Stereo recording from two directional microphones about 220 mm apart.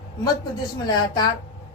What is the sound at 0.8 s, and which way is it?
Speech, 20° left (ahead or behind).